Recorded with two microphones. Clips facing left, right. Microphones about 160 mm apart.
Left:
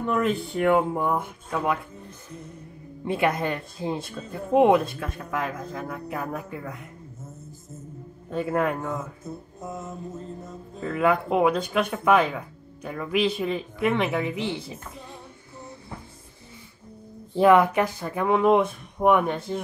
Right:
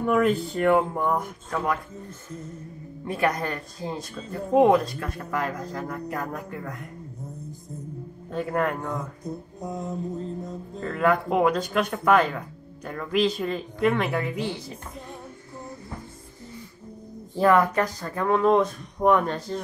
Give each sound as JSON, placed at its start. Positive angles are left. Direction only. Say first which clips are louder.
{"t": 0.0, "sound": "speech", "louder": "right 3 dB", "side_deg": -5}
{"t": 0.6, "sound": "speech", "louder": "left 2 dB", "side_deg": 15}
{"t": 3.3, "sound": "speech", "louder": "left 2 dB", "side_deg": 20}
{"t": 4.3, "sound": "speech", "louder": "even", "side_deg": 10}
{"t": 14.2, "sound": "speech", "louder": "left 1 dB", "side_deg": 20}
{"t": 17.4, "sound": "speech", "louder": "left 2 dB", "side_deg": 10}